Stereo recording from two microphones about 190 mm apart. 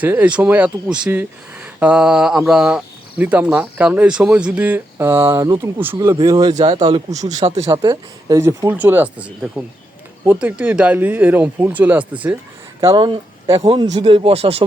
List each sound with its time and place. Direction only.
0.0 s speech: 10° right (ahead or behind)
6.1 s speech: 20° right (ahead or behind)
6.5 s speech: 35° right (ahead or behind)
7.7 s speech: 20° right (ahead or behind)
12.8 s speech: 25° right (ahead or behind)